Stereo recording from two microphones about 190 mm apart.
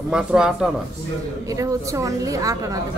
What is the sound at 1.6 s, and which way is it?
A woman's voice, 15° right (ahead or behind).